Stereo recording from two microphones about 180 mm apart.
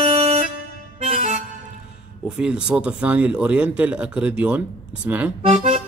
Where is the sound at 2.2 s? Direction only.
5° right (ahead or behind).